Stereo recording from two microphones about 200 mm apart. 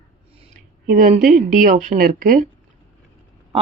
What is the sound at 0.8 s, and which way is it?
A woman's voice, 40° right (ahead or behind).